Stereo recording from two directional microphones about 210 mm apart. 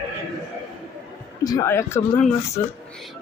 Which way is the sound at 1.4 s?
15° left (ahead or behind).